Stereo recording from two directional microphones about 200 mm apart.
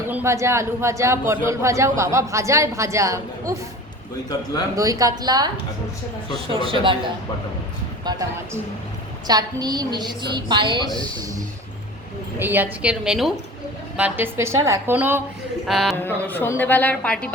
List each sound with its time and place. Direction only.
0.1 s speech: 10° right (ahead or behind)
4.7 s speech: 15° right (ahead or behind)
6.5 s a woman's voice: 25° right (ahead or behind)
9.2 s a woman's voice: 20° right (ahead or behind)
12.4 s a woman's voice: 10° right (ahead or behind)
16.0 s a woman's voice: 10° left (ahead or behind)